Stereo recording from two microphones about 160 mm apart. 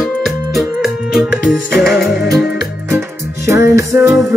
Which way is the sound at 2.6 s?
15° right (ahead or behind).